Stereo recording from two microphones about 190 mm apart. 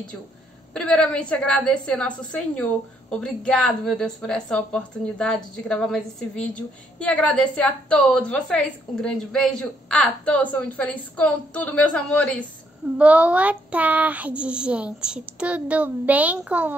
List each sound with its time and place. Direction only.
0.7 s a woman's voice: 5° left (ahead or behind)
12.9 s speech: 5° right (ahead or behind)